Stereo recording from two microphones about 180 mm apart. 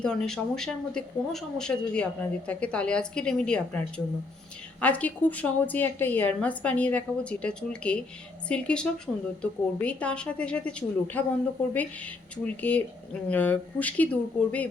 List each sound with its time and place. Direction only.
0.0 s a woman's voice: 5° left (ahead or behind)
9.1 s speech: 10° right (ahead or behind)
9.4 s a woman's voice: 5° left (ahead or behind)